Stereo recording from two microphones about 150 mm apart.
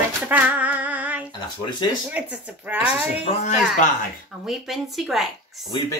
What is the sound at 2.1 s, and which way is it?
Speech, 10° right (ahead or behind).